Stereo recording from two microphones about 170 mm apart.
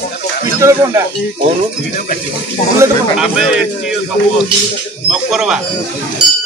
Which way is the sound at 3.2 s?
5° right (ahead or behind).